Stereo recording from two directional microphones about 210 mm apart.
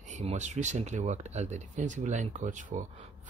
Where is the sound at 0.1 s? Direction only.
30° right (ahead or behind).